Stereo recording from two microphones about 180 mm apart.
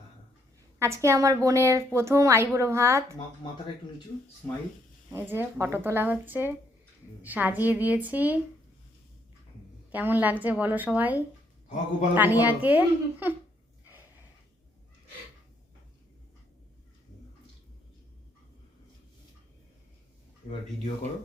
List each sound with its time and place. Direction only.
0.8 s a woman's voice: 15° right (ahead or behind)
5.1 s a woman's voice: 10° right (ahead or behind)
9.9 s a woman's voice: 10° right (ahead or behind)
20.5 s speech: 35° left (ahead or behind)